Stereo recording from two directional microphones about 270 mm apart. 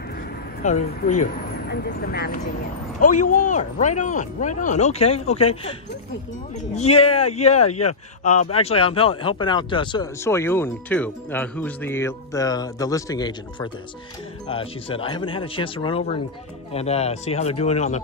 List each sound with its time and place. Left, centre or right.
0.6 s speech: left